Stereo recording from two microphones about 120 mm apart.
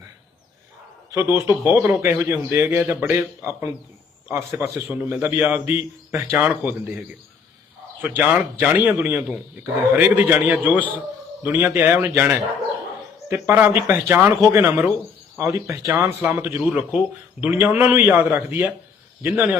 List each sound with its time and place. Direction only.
1.1 s a man's voice: 20° right (ahead or behind)